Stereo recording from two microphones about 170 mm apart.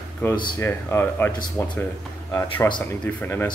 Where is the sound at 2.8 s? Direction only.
10° left (ahead or behind).